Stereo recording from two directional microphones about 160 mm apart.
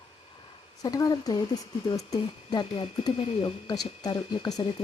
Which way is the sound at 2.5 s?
25° left (ahead or behind).